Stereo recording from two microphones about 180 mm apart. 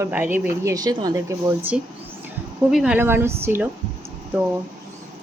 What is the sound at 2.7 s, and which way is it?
Speech, 5° right (ahead or behind).